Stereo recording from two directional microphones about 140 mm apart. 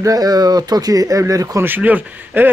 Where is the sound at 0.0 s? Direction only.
25° right (ahead or behind).